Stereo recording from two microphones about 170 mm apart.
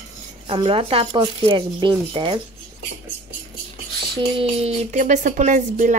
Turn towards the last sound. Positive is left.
turn(degrees=-50)  # may be behind; listen again after turning